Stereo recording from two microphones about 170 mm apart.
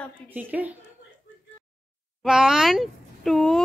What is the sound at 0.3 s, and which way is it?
Speech, 10° right (ahead or behind).